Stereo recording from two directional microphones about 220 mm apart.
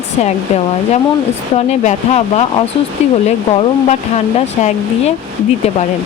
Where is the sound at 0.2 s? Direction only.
30° left (ahead or behind).